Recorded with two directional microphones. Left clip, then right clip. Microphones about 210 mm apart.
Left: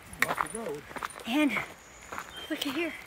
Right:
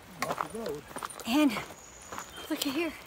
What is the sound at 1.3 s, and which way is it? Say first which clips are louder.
Speech: right 1 dB; 20° right (ahead or behind).